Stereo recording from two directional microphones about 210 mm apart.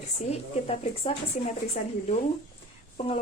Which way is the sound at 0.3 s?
30° left (ahead or behind).